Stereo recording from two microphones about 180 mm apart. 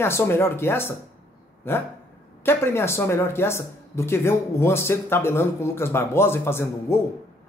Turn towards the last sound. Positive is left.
turn(degrees=15)  # may be behind; listen again after turning